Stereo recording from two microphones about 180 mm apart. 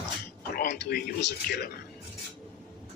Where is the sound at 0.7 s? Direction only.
65° left (ahead or behind).